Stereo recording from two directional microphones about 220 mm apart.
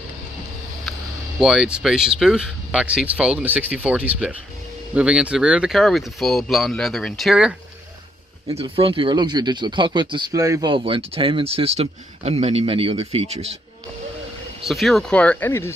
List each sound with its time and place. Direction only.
1.4 s speech: 5° right (ahead or behind)
8.5 s speech: 25° right (ahead or behind)
14.6 s speech: centre (ahead or behind)